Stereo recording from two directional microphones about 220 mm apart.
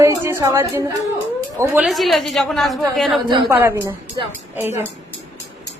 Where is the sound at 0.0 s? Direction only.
10° right (ahead or behind).